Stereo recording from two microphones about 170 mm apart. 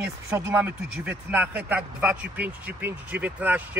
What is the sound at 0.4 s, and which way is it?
Speech, 10° right (ahead or behind).